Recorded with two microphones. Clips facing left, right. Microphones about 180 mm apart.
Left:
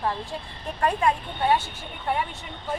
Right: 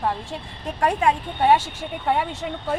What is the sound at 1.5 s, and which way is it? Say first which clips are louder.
Speech: right 6 dB; 90° right.